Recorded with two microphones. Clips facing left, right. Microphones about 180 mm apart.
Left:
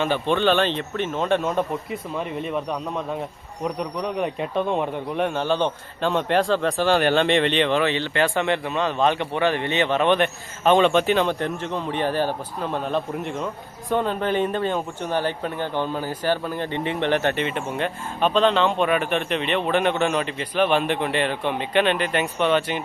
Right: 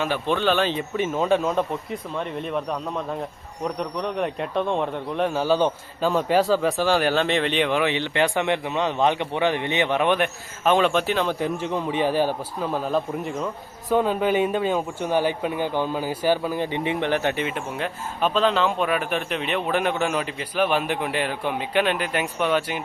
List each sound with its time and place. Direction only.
0.0 s speech: 5° right (ahead or behind)